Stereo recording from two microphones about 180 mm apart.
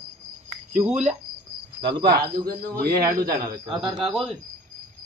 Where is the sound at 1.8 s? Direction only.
25° right (ahead or behind).